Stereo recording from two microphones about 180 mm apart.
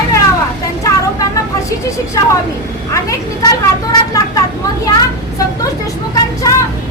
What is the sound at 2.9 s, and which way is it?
A woman's voice, 20° left (ahead or behind).